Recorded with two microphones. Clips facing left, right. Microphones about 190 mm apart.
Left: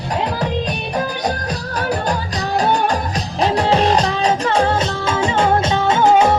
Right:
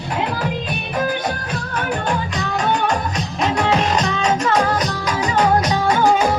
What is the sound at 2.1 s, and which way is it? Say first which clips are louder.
Music: left 2 dB; 35° left (ahead or behind).